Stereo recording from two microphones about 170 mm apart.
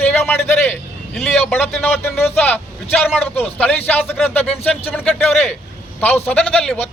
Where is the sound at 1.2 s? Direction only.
5° left (ahead or behind).